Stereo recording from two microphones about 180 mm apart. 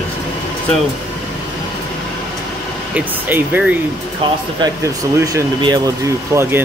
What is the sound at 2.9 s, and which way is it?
Speech, 10° right (ahead or behind).